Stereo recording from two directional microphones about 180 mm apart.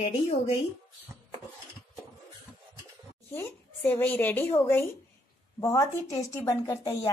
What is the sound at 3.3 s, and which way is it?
A woman's voice, 10° left (ahead or behind).